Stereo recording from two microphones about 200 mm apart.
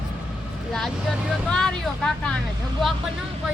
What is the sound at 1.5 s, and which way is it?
Speech, 5° left (ahead or behind).